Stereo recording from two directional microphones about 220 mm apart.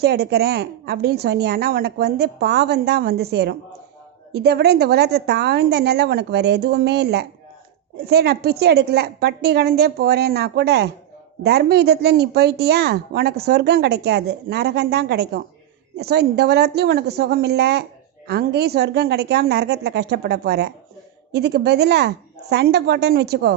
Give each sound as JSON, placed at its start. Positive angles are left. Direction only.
{"t": 0.0, "sound": "a woman's voice", "side_deg": -45}